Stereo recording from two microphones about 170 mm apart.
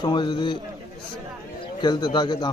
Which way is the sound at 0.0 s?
25° left (ahead or behind).